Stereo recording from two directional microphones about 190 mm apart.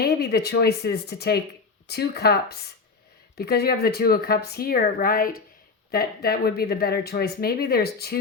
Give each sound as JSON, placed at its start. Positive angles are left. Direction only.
{"t": 0.0, "sound": "speech", "side_deg": 60}